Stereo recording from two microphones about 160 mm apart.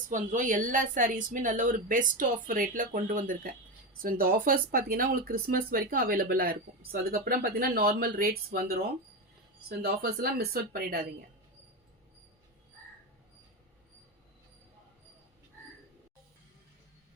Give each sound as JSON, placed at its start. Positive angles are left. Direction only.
{"t": 0.1, "sound": "speech", "side_deg": -50}